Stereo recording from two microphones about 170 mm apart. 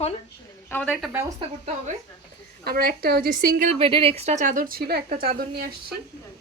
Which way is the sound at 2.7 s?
65° right (ahead or behind).